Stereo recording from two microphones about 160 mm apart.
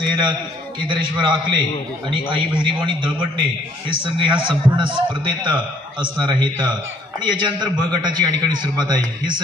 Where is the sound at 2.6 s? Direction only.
30° right (ahead or behind).